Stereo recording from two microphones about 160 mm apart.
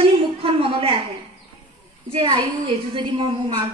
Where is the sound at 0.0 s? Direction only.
35° right (ahead or behind).